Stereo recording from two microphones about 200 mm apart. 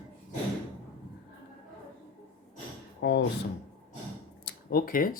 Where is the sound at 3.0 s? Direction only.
55° left (ahead or behind).